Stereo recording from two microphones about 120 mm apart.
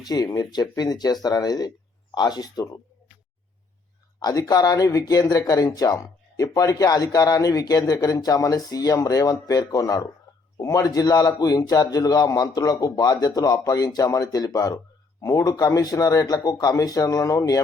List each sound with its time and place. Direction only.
0.0 s a man's voice: 35° left (ahead or behind)
4.2 s a man's voice: 30° left (ahead or behind)